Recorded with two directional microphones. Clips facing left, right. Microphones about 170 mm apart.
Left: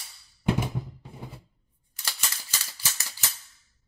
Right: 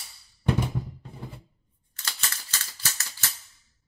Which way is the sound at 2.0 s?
15° left (ahead or behind).